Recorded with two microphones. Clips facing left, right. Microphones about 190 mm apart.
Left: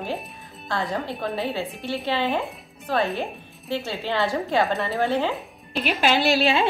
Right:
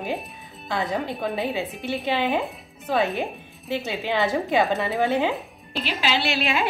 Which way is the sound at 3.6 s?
15° right (ahead or behind).